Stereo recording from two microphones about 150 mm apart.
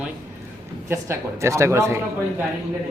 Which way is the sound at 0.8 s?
20° right (ahead or behind).